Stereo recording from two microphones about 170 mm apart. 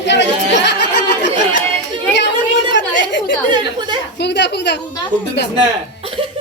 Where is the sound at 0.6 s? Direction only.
90° left.